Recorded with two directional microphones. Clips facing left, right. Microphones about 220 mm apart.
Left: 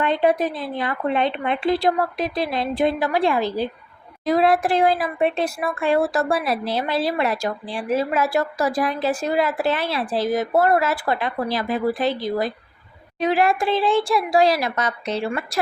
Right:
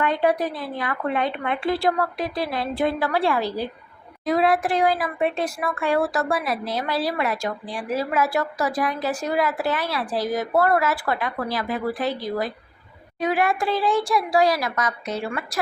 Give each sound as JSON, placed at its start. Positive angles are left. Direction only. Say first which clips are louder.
{"t": 0.0, "sound": "speech", "louder": "left 2 dB", "side_deg": 25}
{"t": 4.3, "sound": "speech", "louder": "left 2 dB", "side_deg": 35}